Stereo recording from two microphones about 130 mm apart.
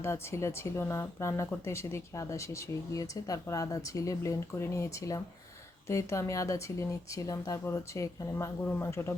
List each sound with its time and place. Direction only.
0.0 s speech: 20° left (ahead or behind)